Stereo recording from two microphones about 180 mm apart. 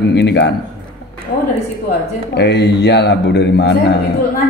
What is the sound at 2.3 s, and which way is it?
A man's voice, 70° left (ahead or behind).